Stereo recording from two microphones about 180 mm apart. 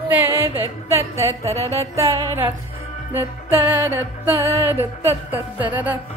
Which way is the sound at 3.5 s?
10° right (ahead or behind).